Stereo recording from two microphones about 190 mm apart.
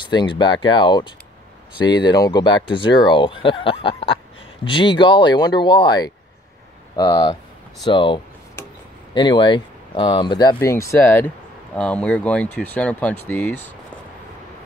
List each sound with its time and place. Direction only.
0.0 s speech: 25° left (ahead or behind); by 13.7 s 5° left (ahead or behind)